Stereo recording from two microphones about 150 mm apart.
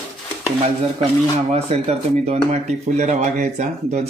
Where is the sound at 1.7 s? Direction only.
45° right (ahead or behind).